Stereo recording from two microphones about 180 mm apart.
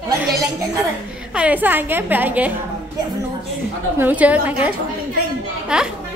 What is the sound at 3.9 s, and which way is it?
Speech, 10° right (ahead or behind).